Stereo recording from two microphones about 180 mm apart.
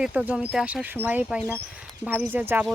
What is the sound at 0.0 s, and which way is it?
Speech, 5° right (ahead or behind).